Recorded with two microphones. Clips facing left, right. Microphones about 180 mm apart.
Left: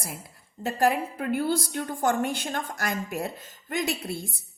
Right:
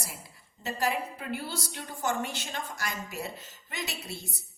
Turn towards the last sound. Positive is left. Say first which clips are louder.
# left 10 dB
turn(degrees=50)  # may be behind; listen again after turning